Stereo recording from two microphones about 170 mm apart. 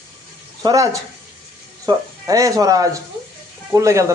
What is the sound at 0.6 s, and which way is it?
Speech, 25° right (ahead or behind).